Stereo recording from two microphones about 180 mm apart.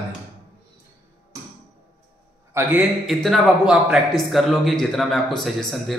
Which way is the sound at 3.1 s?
Centre (ahead or behind).